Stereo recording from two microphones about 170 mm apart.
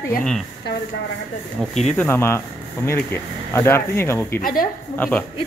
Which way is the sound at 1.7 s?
Centre (ahead or behind).